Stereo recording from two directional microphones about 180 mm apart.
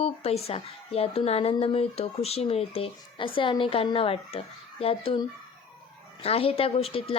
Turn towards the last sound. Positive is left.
turn(degrees=30)  # may be behind; listen again after turning